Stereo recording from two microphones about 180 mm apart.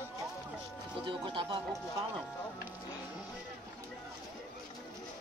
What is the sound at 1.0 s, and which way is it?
Speech, 30° right (ahead or behind).